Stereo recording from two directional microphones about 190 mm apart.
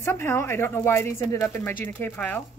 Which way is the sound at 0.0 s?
10° left (ahead or behind).